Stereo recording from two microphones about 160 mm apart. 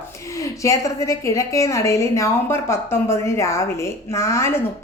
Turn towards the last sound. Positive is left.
turn(degrees=15)  # may be behind; listen again after turning